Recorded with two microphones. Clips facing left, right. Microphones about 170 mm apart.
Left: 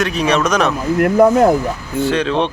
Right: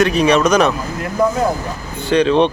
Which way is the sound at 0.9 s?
60° left (ahead or behind).